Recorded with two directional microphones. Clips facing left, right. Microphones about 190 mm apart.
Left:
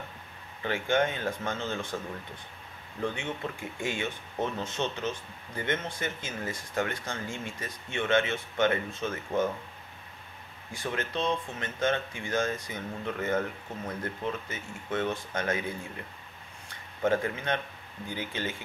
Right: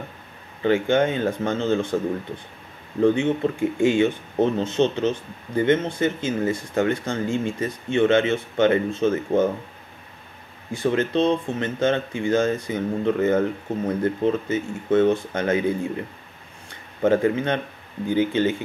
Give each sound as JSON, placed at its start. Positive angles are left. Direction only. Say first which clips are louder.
{"t": 0.6, "sound": "speech", "louder": "right 8 dB", "side_deg": -25}
{"t": 3.2, "sound": "speech", "louder": "right 14 dB", "side_deg": -25}
{"t": 10.7, "sound": "speech", "louder": "right 12 dB", "side_deg": -25}
{"t": 17.0, "sound": "speech", "louder": "right 9 dB", "side_deg": -30}